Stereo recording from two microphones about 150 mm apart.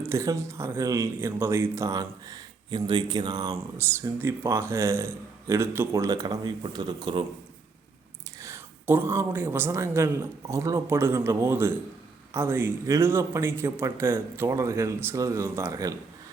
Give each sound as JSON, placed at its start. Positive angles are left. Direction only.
{"t": 0.0, "sound": "speech", "side_deg": -20}
{"t": 8.4, "sound": "speech", "side_deg": -20}